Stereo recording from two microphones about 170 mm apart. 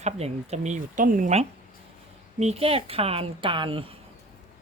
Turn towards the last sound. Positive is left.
turn(degrees=-30)  # may be behind; listen again after turning